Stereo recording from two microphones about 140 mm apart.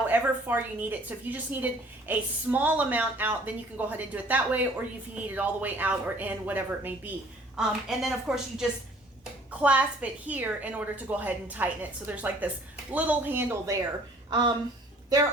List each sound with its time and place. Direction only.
0.1 s a woman's voice: 15° right (ahead or behind)
15.1 s a woman's voice: 25° right (ahead or behind)